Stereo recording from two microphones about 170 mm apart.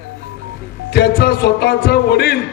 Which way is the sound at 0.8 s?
70° left (ahead or behind).